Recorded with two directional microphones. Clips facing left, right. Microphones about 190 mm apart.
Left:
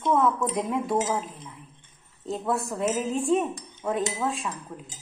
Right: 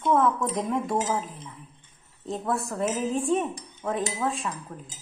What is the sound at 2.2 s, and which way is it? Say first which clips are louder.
A woman's voice: left 1 dB; centre (ahead or behind).